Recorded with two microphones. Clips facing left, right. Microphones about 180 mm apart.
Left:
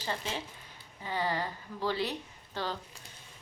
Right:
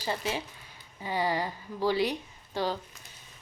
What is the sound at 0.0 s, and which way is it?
A woman's voice, 10° right (ahead or behind).